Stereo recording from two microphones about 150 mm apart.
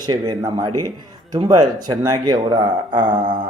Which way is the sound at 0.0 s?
25° right (ahead or behind).